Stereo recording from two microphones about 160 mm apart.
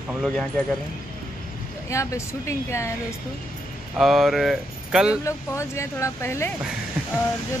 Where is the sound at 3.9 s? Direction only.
Centre (ahead or behind).